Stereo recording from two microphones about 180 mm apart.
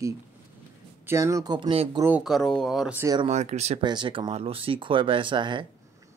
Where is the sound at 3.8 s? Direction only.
25° right (ahead or behind).